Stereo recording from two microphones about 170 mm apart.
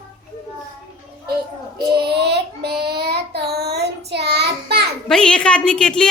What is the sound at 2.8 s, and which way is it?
Child singing, 70° right (ahead or behind).